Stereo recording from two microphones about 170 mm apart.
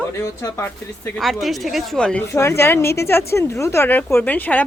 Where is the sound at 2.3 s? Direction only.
15° left (ahead or behind).